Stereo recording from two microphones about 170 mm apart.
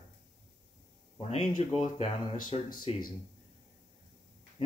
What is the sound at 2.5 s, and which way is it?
Speech, 35° left (ahead or behind).